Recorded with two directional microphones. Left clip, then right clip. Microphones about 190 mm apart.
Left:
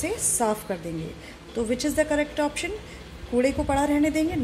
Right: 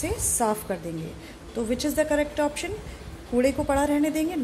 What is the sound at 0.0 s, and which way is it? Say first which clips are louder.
A woman's voice: even; 5° left (ahead or behind).